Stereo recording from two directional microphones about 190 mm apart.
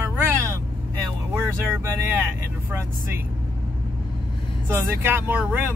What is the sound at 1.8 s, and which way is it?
Speech, 10° right (ahead or behind).